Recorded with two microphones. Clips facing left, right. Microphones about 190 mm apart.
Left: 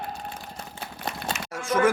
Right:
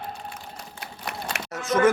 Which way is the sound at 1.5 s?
10° left (ahead or behind).